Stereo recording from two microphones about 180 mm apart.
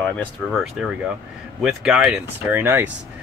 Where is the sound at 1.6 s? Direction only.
5° right (ahead or behind).